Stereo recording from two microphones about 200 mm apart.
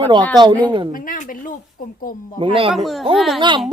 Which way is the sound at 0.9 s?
45° left (ahead or behind).